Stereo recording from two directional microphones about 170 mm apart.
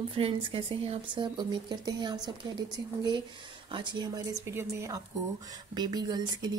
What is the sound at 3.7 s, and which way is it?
Speech, 25° right (ahead or behind).